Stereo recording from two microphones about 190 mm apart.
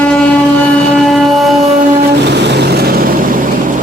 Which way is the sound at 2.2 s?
65° right (ahead or behind).